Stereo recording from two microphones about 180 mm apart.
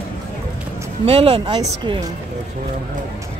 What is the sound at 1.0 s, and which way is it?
Speech, 30° right (ahead or behind).